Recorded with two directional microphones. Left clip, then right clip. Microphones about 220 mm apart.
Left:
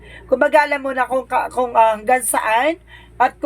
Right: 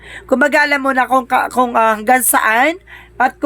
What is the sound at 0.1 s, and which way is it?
A woman's voice, 50° right (ahead or behind).